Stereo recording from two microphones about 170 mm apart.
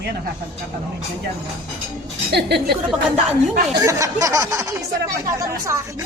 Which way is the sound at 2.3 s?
75° right (ahead or behind).